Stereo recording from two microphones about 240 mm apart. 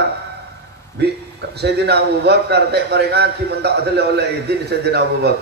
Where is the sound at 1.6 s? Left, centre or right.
Right.